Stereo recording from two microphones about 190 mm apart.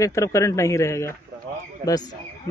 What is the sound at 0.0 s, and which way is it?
Speech, 15° left (ahead or behind).